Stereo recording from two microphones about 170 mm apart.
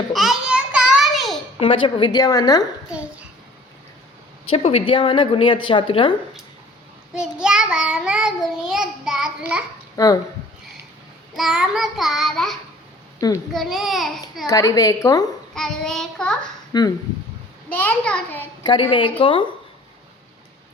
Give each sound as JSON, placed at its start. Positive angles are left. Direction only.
{"t": 0.1, "sound": "a sound", "side_deg": 0}
{"t": 1.5, "sound": "a woman's voice", "side_deg": 30}
{"t": 2.9, "sound": "a sound", "side_deg": -5}
{"t": 4.4, "sound": "a woman's voice", "side_deg": 35}
{"t": 7.1, "sound": "child singing", "side_deg": -5}
{"t": 9.9, "sound": "speech", "side_deg": 20}
{"t": 11.3, "sound": "child singing", "side_deg": -5}
{"t": 13.1, "sound": "a child's voice", "side_deg": 20}
{"t": 13.5, "sound": "child singing", "side_deg": 0}
{"t": 14.4, "sound": "a woman's voice", "side_deg": 20}
{"t": 15.5, "sound": "child singing", "side_deg": 5}
{"t": 16.7, "sound": "a woman's voice", "side_deg": 20}
{"t": 17.7, "sound": "a child's voice", "side_deg": 10}
{"t": 18.6, "sound": "a woman's voice", "side_deg": 30}